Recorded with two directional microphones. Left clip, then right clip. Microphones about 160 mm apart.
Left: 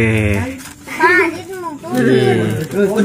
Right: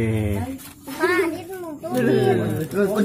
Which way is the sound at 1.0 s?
25° right (ahead or behind).